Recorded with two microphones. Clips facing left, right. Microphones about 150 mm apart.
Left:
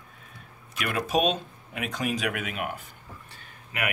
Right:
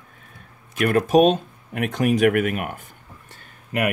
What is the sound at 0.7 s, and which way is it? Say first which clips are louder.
Speech: right 10 dB; 50° right (ahead or behind).